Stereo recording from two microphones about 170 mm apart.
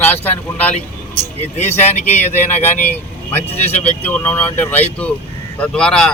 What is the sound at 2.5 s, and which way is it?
Speech, 10° left (ahead or behind).